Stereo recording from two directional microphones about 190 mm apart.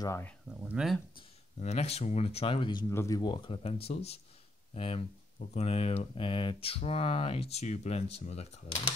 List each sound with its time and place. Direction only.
0.0 s speech: 15° left (ahead or behind)
0.5 s speech: 5° right (ahead or behind)
1.1 s speech: 35° left (ahead or behind)